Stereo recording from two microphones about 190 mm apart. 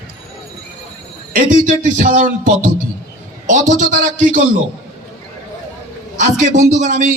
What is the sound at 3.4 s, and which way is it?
Speech, 40° right (ahead or behind).